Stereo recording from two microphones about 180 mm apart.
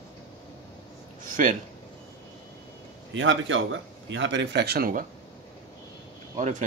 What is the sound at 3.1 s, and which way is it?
Speech, 90° right.